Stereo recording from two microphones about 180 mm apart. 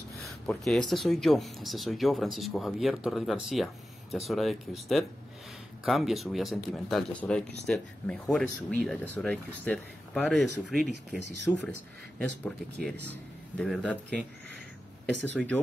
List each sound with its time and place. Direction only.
0.2 s speech: centre (ahead or behind)
15.4 s speech: centre (ahead or behind)